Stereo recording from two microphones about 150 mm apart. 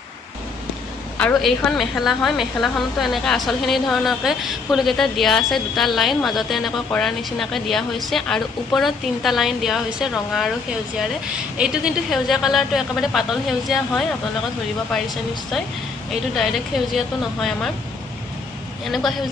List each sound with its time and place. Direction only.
1.1 s speech: 5° left (ahead or behind)
16.1 s speech: centre (ahead or behind)
18.9 s speech: centre (ahead or behind)